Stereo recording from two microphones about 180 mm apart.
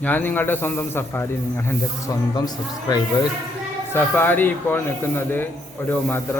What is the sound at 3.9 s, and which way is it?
A man's voice, 10° left (ahead or behind).